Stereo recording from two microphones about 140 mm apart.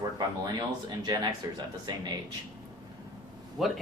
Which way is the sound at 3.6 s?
Centre (ahead or behind).